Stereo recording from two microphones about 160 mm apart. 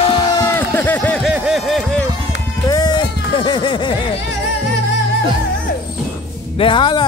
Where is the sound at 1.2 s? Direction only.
5° right (ahead or behind).